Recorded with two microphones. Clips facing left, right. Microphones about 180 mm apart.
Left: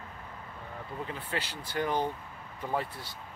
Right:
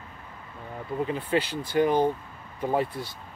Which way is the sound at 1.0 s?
15° right (ahead or behind).